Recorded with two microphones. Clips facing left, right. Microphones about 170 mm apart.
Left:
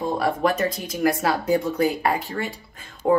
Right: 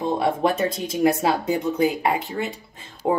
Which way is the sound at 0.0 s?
25° right (ahead or behind).